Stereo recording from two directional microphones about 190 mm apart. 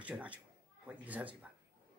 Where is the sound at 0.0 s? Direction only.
5° right (ahead or behind).